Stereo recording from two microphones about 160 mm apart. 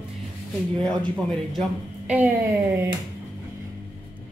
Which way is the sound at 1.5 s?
10° right (ahead or behind).